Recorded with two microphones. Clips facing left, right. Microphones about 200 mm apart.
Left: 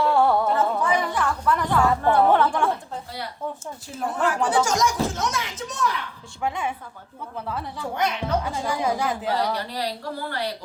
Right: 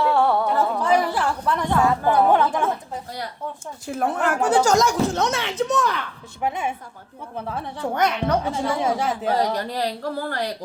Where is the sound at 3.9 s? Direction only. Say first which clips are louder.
Right 2 dB; 60° right (ahead or behind).